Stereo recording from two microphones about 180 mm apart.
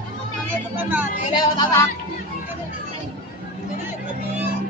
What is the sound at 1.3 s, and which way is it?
Music, 25° left (ahead or behind).